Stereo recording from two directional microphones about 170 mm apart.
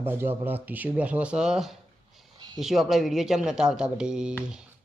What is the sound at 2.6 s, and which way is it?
Speech, centre (ahead or behind).